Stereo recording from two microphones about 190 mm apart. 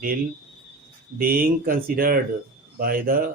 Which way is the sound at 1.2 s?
50° right (ahead or behind).